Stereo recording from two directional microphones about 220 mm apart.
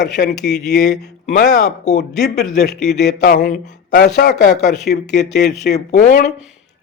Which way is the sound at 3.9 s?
50° left (ahead or behind).